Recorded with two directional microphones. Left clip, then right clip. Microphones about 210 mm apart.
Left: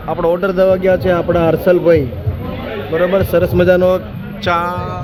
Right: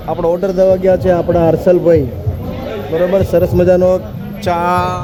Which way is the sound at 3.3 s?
20° right (ahead or behind).